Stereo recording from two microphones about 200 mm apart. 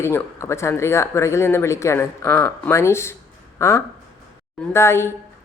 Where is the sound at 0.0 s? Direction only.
15° left (ahead or behind).